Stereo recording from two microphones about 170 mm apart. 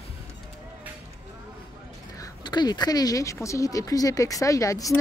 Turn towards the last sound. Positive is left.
turn(degrees=20)  # may be behind; listen again after turning